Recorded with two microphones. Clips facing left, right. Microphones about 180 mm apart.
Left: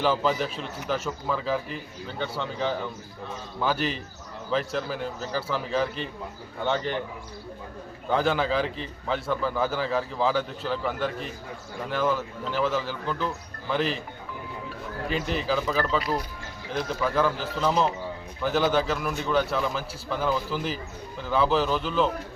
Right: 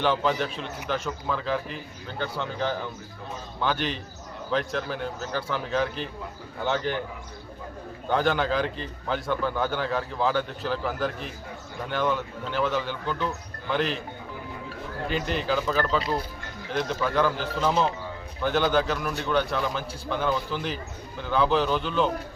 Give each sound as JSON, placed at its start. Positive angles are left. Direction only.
{"t": 0.0, "sound": "a man's voice", "side_deg": 0}
{"t": 8.1, "sound": "a man's voice", "side_deg": 0}
{"t": 15.0, "sound": "a man's voice", "side_deg": 0}
{"t": 16.0, "sound": "speech", "side_deg": -25}
{"t": 16.6, "sound": "a man's voice", "side_deg": 0}